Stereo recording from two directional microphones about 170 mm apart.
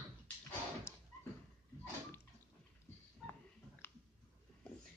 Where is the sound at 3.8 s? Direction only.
15° left (ahead or behind).